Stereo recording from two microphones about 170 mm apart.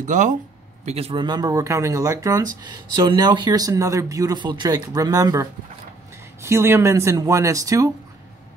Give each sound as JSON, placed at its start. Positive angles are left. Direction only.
{"t": 0.0, "sound": "speech", "side_deg": -45}
{"t": 0.8, "sound": "speech", "side_deg": -35}